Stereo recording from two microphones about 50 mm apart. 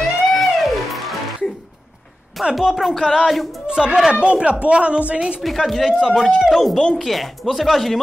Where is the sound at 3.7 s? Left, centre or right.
Centre.